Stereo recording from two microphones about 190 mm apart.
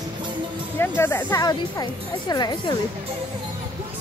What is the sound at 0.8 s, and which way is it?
Speech, 10° left (ahead or behind).